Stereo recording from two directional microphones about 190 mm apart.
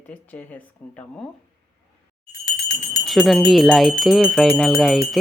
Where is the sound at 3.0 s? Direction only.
Centre (ahead or behind).